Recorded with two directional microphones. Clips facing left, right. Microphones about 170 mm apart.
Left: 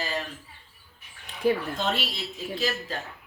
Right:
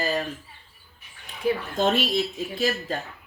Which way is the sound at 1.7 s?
50° right (ahead or behind).